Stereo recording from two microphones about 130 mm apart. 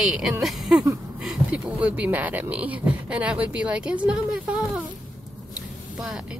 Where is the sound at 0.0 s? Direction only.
5° right (ahead or behind).